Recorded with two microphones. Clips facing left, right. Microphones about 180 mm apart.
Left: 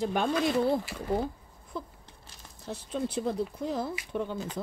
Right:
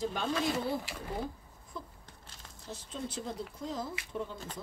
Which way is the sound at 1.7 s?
65° left (ahead or behind).